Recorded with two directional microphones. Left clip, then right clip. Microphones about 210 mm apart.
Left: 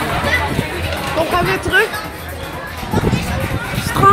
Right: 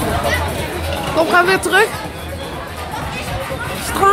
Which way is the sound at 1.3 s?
15° right (ahead or behind).